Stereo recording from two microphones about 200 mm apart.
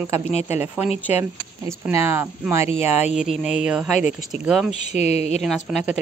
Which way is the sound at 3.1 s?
Centre (ahead or behind).